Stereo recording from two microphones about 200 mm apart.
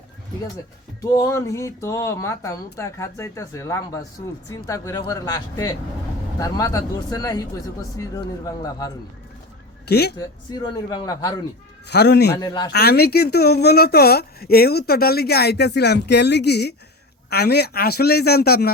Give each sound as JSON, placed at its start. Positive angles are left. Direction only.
{"t": 1.0, "sound": "speech", "side_deg": 15}
{"t": 9.8, "sound": "a woman's voice", "side_deg": 55}
{"t": 10.2, "sound": "speech", "side_deg": 20}
{"t": 11.9, "sound": "a man's voice", "side_deg": 55}
{"t": 12.4, "sound": "speech", "side_deg": 20}
{"t": 12.7, "sound": "speech", "side_deg": 50}